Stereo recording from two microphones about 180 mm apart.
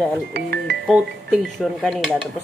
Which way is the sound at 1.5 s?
Centre (ahead or behind).